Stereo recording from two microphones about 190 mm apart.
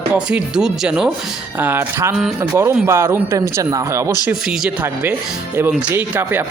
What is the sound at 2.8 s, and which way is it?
Speech, 15° right (ahead or behind).